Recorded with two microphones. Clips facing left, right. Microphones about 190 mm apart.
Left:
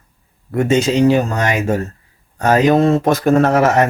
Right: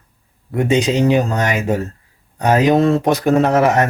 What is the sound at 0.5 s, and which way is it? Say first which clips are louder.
Speech: left 1 dB; 15° right (ahead or behind).